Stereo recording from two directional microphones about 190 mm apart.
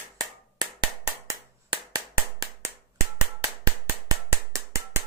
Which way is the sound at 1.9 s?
20° right (ahead or behind).